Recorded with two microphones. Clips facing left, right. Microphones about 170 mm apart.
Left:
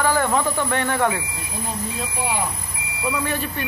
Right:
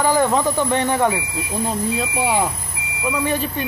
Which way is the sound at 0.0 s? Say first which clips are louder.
Right 3 dB; 20° right (ahead or behind).